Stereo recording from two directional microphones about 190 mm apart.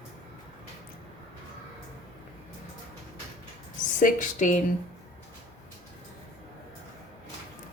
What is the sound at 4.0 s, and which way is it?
Speech, 45° left (ahead or behind).